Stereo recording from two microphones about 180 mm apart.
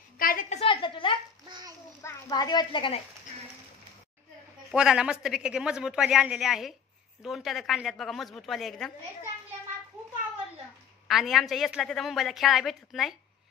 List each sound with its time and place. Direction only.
0.2 s a sound: 50° left (ahead or behind)
0.6 s a woman's voice: 30° left (ahead or behind)
1.5 s a sound: 20° right (ahead or behind)
2.0 s a woman's voice: 20° left (ahead or behind)
4.6 s a woman's voice: 5° right (ahead or behind)
11.1 s a woman's voice: centre (ahead or behind)